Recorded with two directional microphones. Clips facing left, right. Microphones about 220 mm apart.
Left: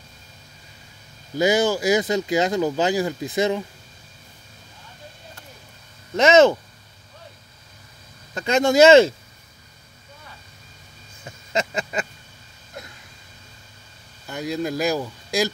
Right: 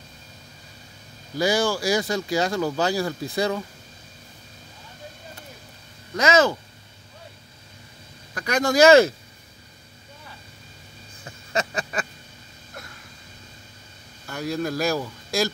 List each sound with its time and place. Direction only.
1.3 s speech: 20° left (ahead or behind)
6.1 s speech: 25° left (ahead or behind)
8.4 s speech: 25° left (ahead or behind)
11.5 s a sound: 20° left (ahead or behind)
14.2 s speech: 20° left (ahead or behind)